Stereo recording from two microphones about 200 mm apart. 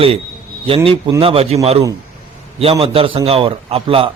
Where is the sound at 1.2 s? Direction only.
30° right (ahead or behind).